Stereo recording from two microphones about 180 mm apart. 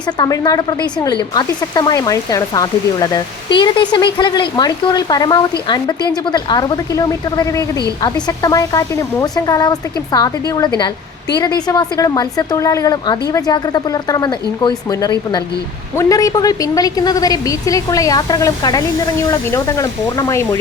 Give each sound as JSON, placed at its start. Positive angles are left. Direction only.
{"t": 0.2, "sound": "speech", "side_deg": 20}